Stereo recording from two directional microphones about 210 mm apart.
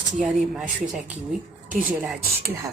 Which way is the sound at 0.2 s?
5° right (ahead or behind).